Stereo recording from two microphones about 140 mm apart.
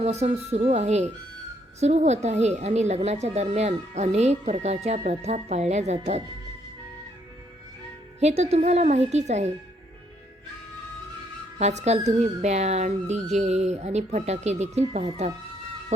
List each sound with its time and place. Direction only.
0.0 s speech: 50° right (ahead or behind)
8.2 s speech: 50° right (ahead or behind)
11.5 s speech: 55° right (ahead or behind)